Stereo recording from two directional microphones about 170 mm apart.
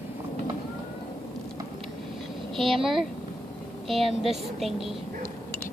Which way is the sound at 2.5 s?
Centre (ahead or behind).